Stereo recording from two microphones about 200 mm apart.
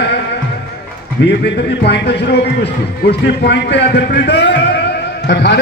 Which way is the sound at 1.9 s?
60° left (ahead or behind).